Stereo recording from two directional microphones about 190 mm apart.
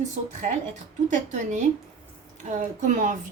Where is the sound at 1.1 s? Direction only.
40° right (ahead or behind).